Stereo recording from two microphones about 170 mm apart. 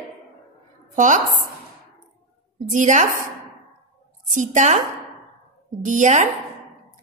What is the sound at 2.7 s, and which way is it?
Speech, 45° right (ahead or behind).